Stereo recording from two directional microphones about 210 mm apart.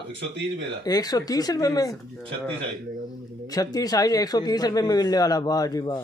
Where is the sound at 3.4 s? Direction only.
15° left (ahead or behind).